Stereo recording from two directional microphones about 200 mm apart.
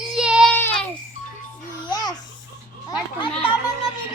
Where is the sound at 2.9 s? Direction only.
25° left (ahead or behind).